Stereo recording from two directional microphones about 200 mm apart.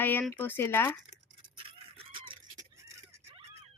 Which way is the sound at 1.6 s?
30° right (ahead or behind).